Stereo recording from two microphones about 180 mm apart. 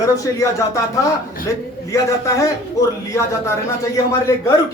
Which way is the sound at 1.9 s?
15° left (ahead or behind).